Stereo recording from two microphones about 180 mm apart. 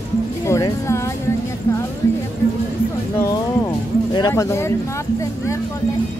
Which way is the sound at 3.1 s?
15° left (ahead or behind).